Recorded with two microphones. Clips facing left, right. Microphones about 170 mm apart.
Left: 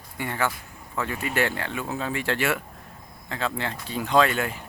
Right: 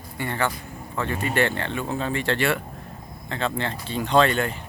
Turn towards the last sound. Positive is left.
turn(degrees=5)  # may be behind; listen again after turning